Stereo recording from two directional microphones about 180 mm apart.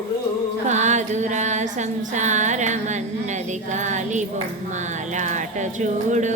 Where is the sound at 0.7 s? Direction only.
40° right (ahead or behind).